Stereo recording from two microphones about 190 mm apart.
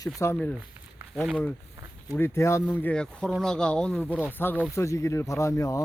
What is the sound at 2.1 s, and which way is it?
Speech, 15° left (ahead or behind).